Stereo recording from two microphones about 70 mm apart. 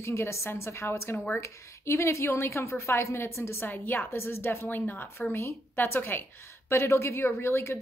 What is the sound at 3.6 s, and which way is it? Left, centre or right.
A woman's voice, left.